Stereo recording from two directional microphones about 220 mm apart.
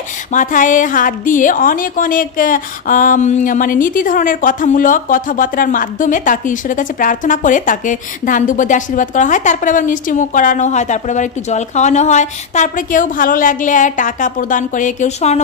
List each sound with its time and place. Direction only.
0.3 s a woman's voice: 35° left (ahead or behind)